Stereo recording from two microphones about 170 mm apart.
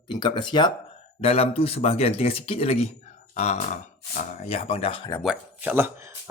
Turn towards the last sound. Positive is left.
turn(degrees=-10)  # may be behind; listen again after turning